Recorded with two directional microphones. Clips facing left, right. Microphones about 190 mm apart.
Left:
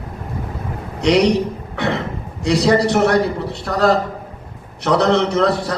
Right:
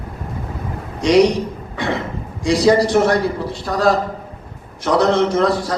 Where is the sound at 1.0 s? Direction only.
65° left (ahead or behind).